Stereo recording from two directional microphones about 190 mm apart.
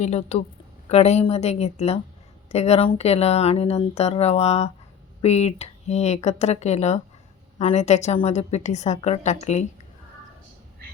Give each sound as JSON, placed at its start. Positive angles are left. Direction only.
{"t": 0.0, "sound": "speech", "side_deg": 35}